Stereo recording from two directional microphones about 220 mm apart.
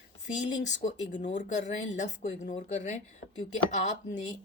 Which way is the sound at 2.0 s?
35° left (ahead or behind).